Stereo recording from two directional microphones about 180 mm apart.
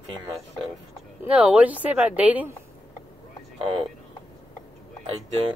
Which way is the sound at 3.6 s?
30° right (ahead or behind).